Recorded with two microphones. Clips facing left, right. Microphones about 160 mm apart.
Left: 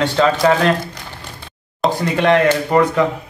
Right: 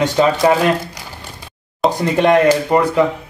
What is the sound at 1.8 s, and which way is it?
Speech, centre (ahead or behind).